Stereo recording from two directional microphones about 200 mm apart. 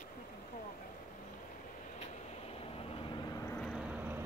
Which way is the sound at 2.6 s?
25° left (ahead or behind).